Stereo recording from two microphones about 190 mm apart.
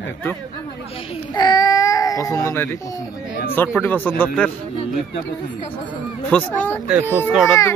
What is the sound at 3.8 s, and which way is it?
Speech, 10° left (ahead or behind).